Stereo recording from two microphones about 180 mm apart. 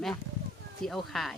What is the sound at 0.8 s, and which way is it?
Speech, centre (ahead or behind).